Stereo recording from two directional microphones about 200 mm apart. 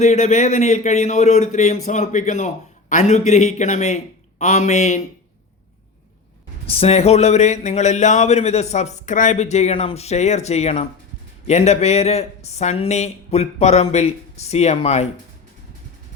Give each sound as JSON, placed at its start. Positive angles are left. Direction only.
{"t": 0.0, "sound": "speech", "side_deg": 35}
{"t": 6.7, "sound": "speech", "side_deg": 30}